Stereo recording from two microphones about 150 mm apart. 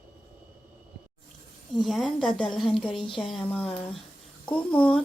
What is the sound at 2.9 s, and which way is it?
Speech, 35° left (ahead or behind).